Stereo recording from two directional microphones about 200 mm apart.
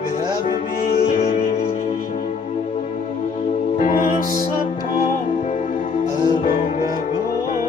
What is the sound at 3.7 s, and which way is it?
Music, 40° left (ahead or behind).